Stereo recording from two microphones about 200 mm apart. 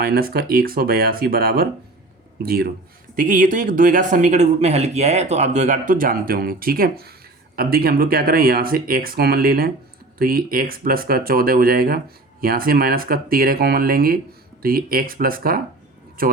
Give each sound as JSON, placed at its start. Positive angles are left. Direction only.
{"t": 0.0, "sound": "speech", "side_deg": -50}